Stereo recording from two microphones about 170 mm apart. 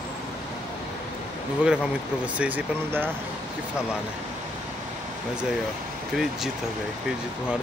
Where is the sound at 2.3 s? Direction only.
10° right (ahead or behind).